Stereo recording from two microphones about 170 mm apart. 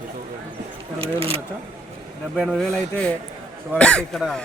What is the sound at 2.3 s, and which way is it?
A man's voice, centre (ahead or behind).